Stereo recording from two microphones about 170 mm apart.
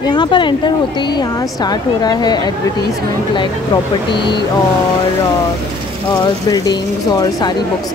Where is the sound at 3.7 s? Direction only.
25° left (ahead or behind).